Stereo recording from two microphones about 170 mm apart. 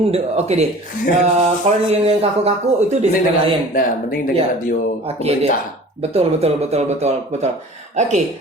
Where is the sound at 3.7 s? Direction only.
55° left (ahead or behind).